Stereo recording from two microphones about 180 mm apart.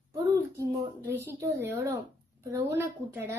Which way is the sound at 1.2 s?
15° right (ahead or behind).